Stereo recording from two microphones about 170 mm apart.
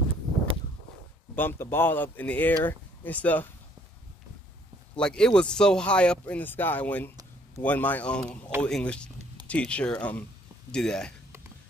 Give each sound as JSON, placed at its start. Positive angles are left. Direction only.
{"t": 1.3, "sound": "speech", "side_deg": 10}
{"t": 4.9, "sound": "speech", "side_deg": 5}